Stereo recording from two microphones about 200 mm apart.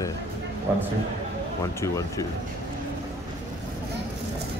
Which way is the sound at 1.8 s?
15° left (ahead or behind).